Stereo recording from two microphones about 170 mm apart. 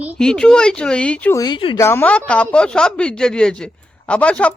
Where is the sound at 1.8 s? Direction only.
15° left (ahead or behind).